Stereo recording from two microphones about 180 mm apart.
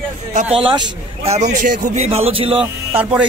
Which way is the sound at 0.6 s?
30° right (ahead or behind).